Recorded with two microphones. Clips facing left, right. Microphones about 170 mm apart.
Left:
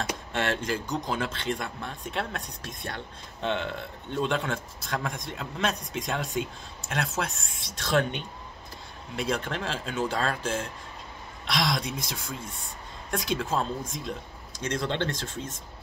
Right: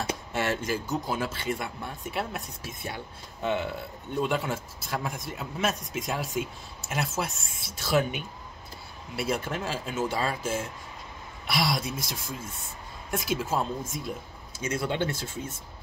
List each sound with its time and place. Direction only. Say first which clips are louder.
0.3 s a man's voice: even; 5° right (ahead or behind)